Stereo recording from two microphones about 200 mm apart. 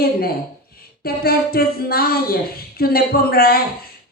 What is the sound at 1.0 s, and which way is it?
A man's voice, 50° left (ahead or behind).